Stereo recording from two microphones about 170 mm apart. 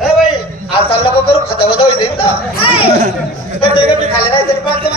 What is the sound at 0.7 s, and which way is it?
A man's voice, 30° left (ahead or behind).